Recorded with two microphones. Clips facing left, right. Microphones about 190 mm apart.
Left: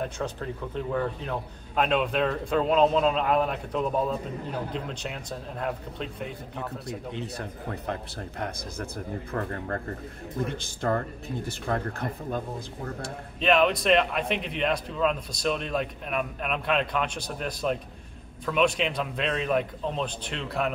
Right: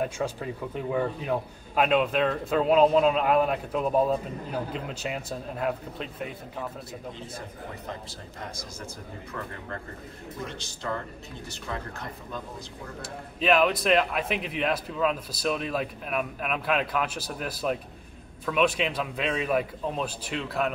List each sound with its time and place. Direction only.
0.0 s a man's voice: 10° right (ahead or behind)
7.2 s speech: 65° left (ahead or behind)
9.3 s speech: 50° left (ahead or behind)
13.0 s a man's voice: centre (ahead or behind)